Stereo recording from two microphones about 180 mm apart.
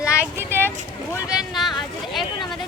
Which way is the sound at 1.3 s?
Centre (ahead or behind).